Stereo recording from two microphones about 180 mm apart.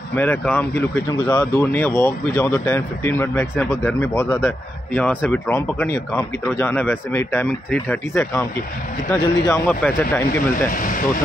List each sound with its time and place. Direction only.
0.1 s speech: 10° left (ahead or behind)
10.7 s speech: 50° left (ahead or behind)